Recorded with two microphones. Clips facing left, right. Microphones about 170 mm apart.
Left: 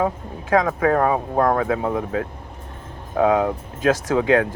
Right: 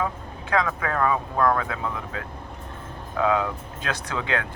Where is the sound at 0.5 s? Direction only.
40° left (ahead or behind).